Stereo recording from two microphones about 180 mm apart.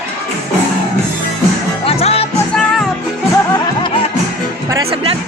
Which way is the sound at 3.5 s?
25° left (ahead or behind).